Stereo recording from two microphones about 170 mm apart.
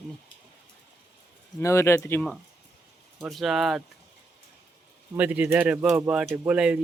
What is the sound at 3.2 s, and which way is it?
Speech, centre (ahead or behind).